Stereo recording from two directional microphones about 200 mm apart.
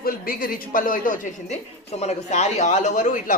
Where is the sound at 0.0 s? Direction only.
45° left (ahead or behind).